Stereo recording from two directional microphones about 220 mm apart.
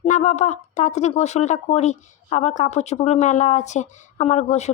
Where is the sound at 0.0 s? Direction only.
30° left (ahead or behind).